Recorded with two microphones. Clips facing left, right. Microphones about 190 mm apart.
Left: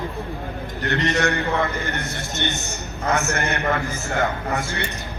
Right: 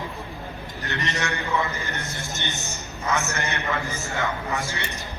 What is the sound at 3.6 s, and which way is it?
A man's voice, 45° left (ahead or behind).